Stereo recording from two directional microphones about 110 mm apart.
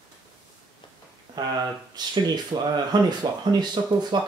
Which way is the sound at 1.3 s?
40° right (ahead or behind).